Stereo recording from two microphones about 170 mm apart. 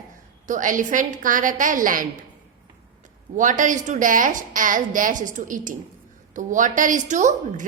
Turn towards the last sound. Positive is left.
turn(degrees=-45)  # may be behind; listen again after turning